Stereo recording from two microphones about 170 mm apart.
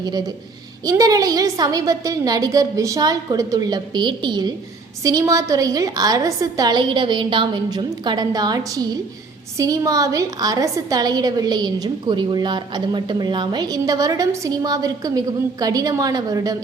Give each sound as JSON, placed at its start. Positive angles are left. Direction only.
{"t": 0.0, "sound": "a woman's voice", "side_deg": -25}